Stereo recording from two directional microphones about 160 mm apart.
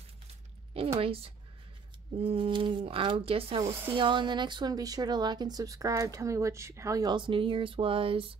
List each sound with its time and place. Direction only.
0.7 s speech: 35° right (ahead or behind)